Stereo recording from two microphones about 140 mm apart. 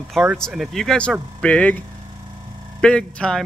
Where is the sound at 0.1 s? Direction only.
5° right (ahead or behind).